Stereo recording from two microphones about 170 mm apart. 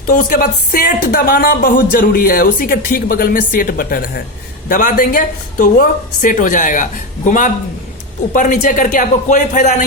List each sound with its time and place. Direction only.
0.0 s a woman's voice: 55° left (ahead or behind)